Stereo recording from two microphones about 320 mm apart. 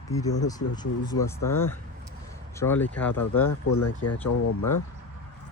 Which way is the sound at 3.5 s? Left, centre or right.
Left.